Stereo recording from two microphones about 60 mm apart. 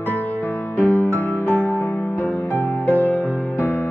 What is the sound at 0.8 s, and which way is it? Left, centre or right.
Music, left.